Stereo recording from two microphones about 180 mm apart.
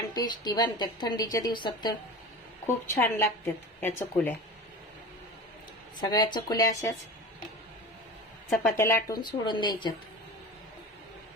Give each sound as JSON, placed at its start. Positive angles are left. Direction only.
{"t": 0.1, "sound": "a woman's voice", "side_deg": 20}
{"t": 2.6, "sound": "a woman's voice", "side_deg": 15}
{"t": 6.0, "sound": "a woman's voice", "side_deg": 25}
{"t": 8.4, "sound": "speech", "side_deg": 0}
{"t": 8.7, "sound": "a woman's voice", "side_deg": 15}